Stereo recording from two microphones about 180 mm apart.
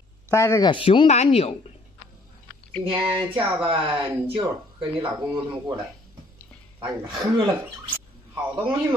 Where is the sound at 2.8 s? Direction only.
30° right (ahead or behind).